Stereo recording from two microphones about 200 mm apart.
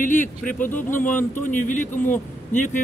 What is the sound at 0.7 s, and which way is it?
Speech, 10° left (ahead or behind).